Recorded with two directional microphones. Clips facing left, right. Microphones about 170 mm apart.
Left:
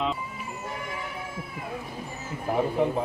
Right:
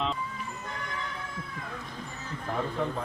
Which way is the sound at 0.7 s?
15° left (ahead or behind).